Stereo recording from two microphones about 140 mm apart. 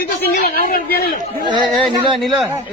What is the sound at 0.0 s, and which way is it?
Speech, 90° left.